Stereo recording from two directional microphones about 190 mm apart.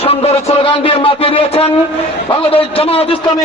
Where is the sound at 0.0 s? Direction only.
30° left (ahead or behind).